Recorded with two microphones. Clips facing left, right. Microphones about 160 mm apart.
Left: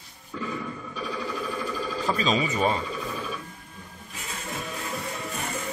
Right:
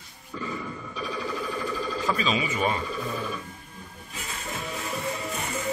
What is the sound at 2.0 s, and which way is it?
Speech, 35° left (ahead or behind).